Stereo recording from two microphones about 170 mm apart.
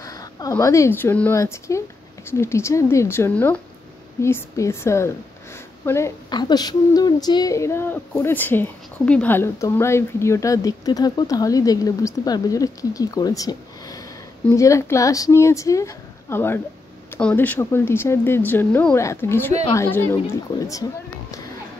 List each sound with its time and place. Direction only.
0.0 s speech: 20° left (ahead or behind)